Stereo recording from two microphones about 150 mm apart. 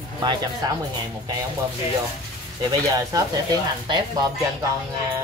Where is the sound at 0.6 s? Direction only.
25° right (ahead or behind).